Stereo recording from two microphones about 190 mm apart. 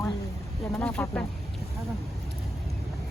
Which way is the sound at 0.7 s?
5° left (ahead or behind).